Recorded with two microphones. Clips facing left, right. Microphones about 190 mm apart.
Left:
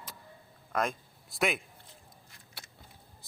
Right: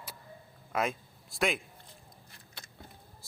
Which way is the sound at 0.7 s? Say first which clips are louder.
Even; centre (ahead or behind).